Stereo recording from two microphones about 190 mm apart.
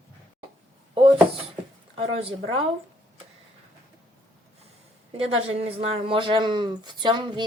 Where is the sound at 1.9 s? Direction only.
30° right (ahead or behind).